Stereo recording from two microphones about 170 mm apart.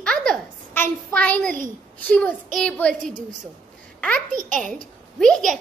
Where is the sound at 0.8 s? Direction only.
10° left (ahead or behind).